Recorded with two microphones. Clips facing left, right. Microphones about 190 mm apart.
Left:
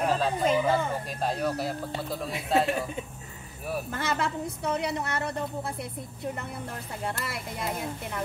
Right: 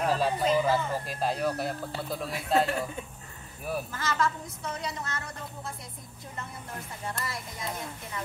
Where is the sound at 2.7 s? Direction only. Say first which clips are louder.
Left 2 dB; 20° left (ahead or behind).